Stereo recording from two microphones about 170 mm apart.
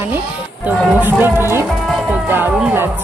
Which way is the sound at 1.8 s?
Centre (ahead or behind).